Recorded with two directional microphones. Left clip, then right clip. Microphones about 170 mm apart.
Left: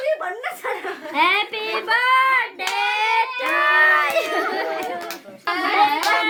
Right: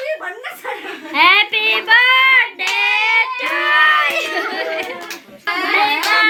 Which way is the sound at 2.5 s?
45° left (ahead or behind).